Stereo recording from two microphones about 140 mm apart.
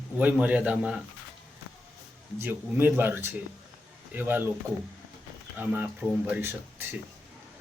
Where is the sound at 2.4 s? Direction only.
15° right (ahead or behind).